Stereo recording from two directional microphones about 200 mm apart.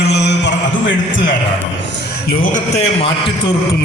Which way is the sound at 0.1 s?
60° left (ahead or behind).